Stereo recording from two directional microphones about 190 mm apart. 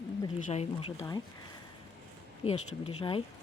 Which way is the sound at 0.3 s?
40° left (ahead or behind).